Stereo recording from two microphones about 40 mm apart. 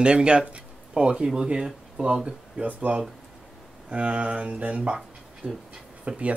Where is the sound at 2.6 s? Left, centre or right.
Right.